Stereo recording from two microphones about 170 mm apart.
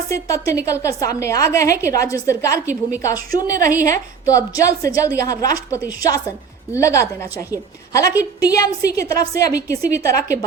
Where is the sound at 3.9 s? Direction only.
20° left (ahead or behind).